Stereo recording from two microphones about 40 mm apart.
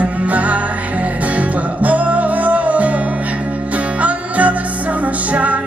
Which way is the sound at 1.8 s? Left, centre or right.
Right.